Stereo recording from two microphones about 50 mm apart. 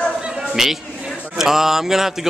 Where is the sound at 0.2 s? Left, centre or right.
Centre.